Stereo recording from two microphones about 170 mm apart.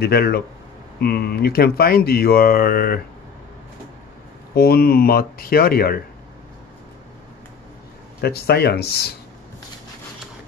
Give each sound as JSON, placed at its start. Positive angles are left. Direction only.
{"t": 0.0, "sound": "speech", "side_deg": 65}
{"t": 4.6, "sound": "speech", "side_deg": 65}
{"t": 8.2, "sound": "speech", "side_deg": 70}